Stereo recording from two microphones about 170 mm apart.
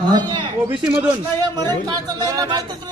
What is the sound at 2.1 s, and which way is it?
Speech, 25° right (ahead or behind).